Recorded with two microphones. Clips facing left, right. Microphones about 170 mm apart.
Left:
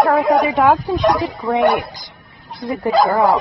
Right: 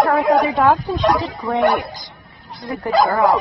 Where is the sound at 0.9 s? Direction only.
10° left (ahead or behind).